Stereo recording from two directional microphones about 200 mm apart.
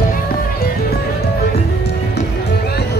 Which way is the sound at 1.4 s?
55° left (ahead or behind).